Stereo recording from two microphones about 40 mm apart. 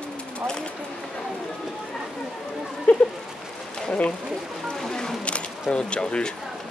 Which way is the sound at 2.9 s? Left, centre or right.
Left.